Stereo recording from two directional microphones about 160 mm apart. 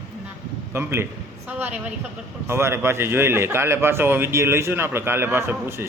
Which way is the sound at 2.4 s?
15° right (ahead or behind).